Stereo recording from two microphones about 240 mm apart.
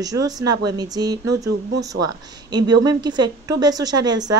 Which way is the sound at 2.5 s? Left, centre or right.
Centre.